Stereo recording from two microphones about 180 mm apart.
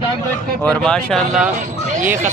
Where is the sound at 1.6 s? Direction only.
45° right (ahead or behind).